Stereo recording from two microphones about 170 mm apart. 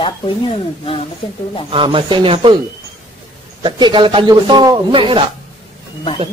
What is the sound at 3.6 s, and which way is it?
Speech, 30° right (ahead or behind).